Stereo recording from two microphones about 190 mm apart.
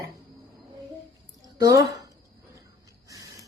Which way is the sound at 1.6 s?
20° right (ahead or behind).